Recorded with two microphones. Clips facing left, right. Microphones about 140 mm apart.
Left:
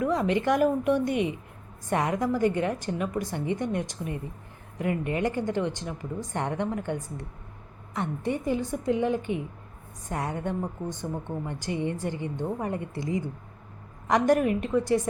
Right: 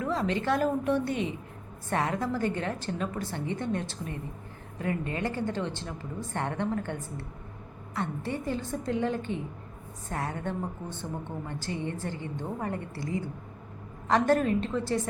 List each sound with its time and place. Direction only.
0.0 s a woman's voice: 15° left (ahead or behind)